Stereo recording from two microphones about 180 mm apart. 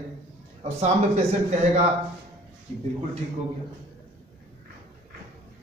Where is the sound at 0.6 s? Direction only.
35° right (ahead or behind).